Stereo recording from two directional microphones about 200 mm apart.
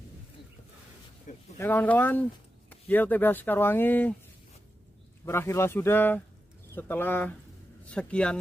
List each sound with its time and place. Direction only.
1.3 s a sound: 40° left (ahead or behind)
1.6 s speech: 10° left (ahead or behind)
5.2 s speech: 10° left (ahead or behind)